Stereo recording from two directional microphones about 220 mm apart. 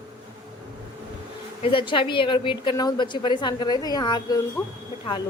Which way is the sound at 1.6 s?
25° left (ahead or behind).